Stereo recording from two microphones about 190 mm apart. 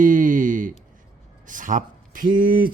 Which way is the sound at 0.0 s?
45° right (ahead or behind).